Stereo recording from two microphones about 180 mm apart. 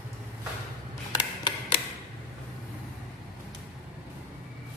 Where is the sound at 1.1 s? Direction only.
25° left (ahead or behind).